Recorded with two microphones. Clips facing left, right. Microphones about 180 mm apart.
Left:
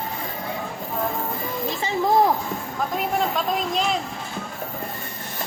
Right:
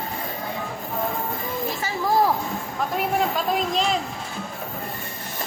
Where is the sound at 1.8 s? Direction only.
25° left (ahead or behind).